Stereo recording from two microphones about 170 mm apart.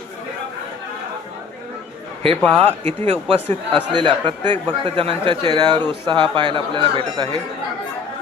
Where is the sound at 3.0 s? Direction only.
35° right (ahead or behind).